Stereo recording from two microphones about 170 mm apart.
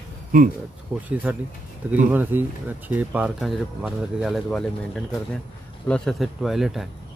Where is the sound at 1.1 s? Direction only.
10° right (ahead or behind).